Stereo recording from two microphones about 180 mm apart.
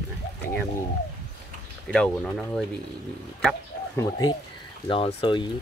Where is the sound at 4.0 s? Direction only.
20° left (ahead or behind).